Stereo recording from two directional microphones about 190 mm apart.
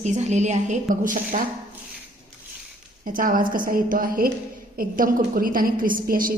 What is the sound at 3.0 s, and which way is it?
A woman's voice, 45° right (ahead or behind).